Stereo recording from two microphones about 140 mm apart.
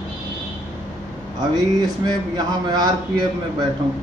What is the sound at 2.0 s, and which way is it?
Speech, 30° right (ahead or behind).